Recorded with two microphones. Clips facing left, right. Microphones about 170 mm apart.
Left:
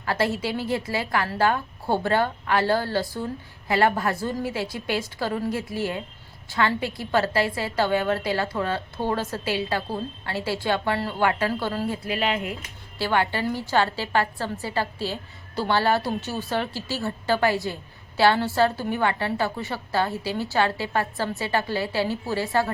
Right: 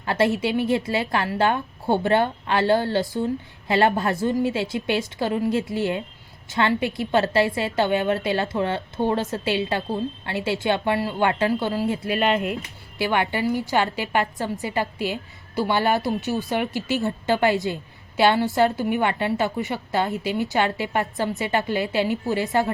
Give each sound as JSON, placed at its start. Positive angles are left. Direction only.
{"t": 0.0, "sound": "a woman's voice", "side_deg": -20}
{"t": 12.0, "sound": "speech", "side_deg": -60}
{"t": 13.0, "sound": "a woman's voice", "side_deg": -15}